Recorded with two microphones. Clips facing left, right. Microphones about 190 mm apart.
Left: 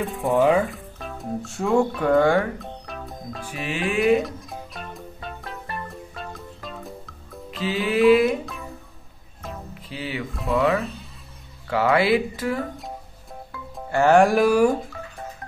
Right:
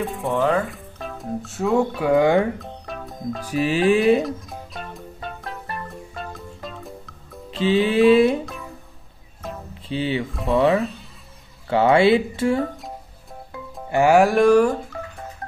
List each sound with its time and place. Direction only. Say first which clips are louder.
0.0 s speech: even; centre (ahead or behind)
0.3 s speech: left 3 dB; 15° left (ahead or behind)
0.7 s speech: right 1 dB; centre (ahead or behind)
2.1 s speech: right 2 dB; 20° right (ahead or behind)
2.6 s music: right 2 dB; centre (ahead or behind)
3.4 s music: right 9 dB; 35° right (ahead or behind)
4.2 s music: right 3 dB; centre (ahead or behind)
7.5 s speech: right 5 dB; 25° right (ahead or behind)
9.8 s speech: right 7 dB; 25° right (ahead or behind)
10.3 s speech: right 2 dB; centre (ahead or behind)
11.7 s speech: right 4 dB; 25° right (ahead or behind)
13.8 s music: right 1 dB; 15° right (ahead or behind)
14.2 s speech: right 2 dB; 5° left (ahead or behind)